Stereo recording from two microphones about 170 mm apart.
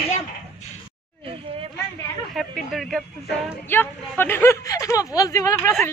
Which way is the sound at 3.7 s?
10° left (ahead or behind).